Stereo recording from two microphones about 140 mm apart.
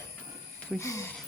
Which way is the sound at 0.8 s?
20° left (ahead or behind).